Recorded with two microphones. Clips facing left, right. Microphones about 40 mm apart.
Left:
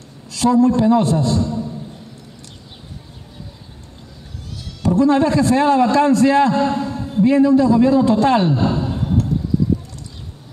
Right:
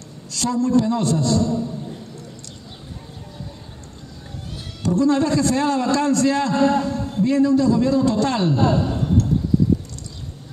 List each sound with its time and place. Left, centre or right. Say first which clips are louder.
0.3 s a man's voice: left 5 dB; centre
4.8 s a man's voice: left 4 dB; centre
6.5 s a man's voice: even; centre